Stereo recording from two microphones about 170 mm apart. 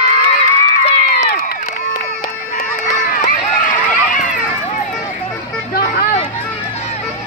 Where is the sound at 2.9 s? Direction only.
55° left (ahead or behind).